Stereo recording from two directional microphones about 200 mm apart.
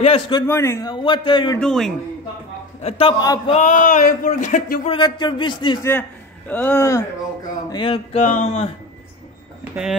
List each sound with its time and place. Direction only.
0.0 s a sound: 25° left (ahead or behind)
0.4 s a man's voice: 15° left (ahead or behind)
1.6 s a man's voice: centre (ahead or behind)
2.8 s a man's voice: 30° left (ahead or behind)
3.5 s speech: 40° left (ahead or behind)
4.8 s a man's voice: 25° left (ahead or behind)
5.9 s a man's voice: 10° left (ahead or behind)
7.7 s a man's voice: 25° left (ahead or behind)
8.2 s speech: 40° left (ahead or behind)